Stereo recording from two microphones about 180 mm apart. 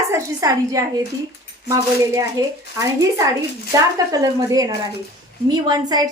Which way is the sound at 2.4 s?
20° right (ahead or behind).